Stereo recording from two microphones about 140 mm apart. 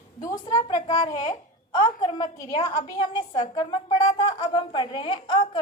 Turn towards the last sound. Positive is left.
turn(degrees=35)  # may be behind; listen again after turning